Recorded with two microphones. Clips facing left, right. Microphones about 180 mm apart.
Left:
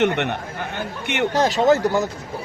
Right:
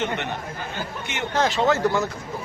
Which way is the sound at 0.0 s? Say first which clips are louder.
Left 7 dB; 65° left (ahead or behind).